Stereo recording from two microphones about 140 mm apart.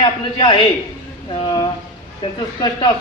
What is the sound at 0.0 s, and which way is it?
Speech, 40° left (ahead or behind).